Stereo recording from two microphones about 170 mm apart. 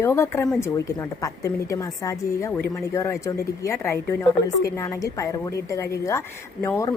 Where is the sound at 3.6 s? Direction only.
15° left (ahead or behind).